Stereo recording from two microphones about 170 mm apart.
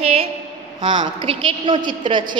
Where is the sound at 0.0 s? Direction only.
35° right (ahead or behind).